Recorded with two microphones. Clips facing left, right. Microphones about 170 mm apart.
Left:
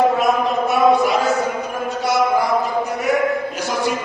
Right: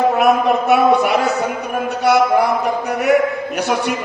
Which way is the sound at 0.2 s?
65° right (ahead or behind).